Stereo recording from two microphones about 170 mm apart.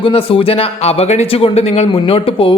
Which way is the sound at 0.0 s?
30° left (ahead or behind).